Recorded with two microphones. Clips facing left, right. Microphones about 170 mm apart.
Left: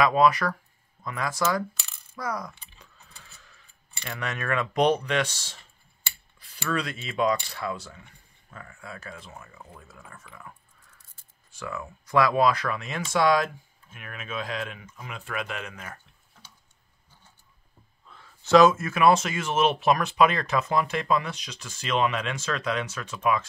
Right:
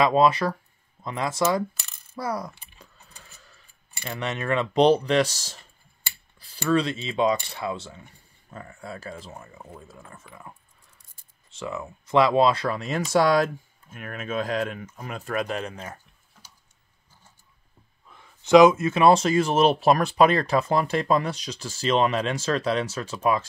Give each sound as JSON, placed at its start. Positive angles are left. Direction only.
{"t": 0.0, "sound": "speech", "side_deg": -25}
{"t": 2.1, "sound": "coin", "side_deg": -30}
{"t": 4.0, "sound": "speech", "side_deg": -25}
{"t": 11.5, "sound": "speech", "side_deg": -20}
{"t": 18.0, "sound": "speech", "side_deg": -15}